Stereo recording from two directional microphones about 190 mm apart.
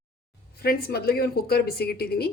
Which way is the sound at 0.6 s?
55° left (ahead or behind).